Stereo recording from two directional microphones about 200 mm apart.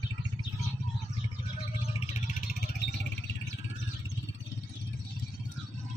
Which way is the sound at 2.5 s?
55° left (ahead or behind).